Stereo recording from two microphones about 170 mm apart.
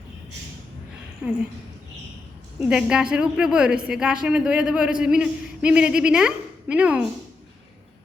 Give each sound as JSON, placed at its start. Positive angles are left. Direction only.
{"t": 1.2, "sound": "a woman's voice", "side_deg": -5}
{"t": 2.6, "sound": "a woman's voice", "side_deg": -5}